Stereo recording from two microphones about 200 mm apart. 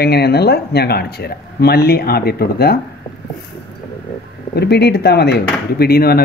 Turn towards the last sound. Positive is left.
turn(degrees=50)  # may be behind; listen again after turning